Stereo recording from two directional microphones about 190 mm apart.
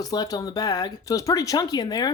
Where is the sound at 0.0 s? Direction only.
20° left (ahead or behind).